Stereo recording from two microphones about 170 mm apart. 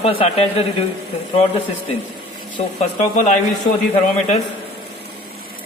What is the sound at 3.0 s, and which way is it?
Speech, 45° left (ahead or behind).